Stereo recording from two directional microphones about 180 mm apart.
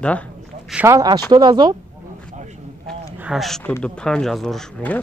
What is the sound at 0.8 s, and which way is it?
Speech, 20° right (ahead or behind).